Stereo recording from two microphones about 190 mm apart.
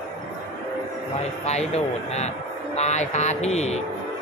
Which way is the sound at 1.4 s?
35° left (ahead or behind).